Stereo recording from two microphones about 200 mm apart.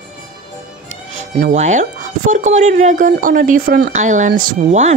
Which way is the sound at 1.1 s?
35° right (ahead or behind).